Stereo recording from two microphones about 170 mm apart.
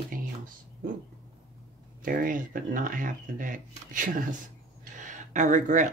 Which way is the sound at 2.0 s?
55° right (ahead or behind).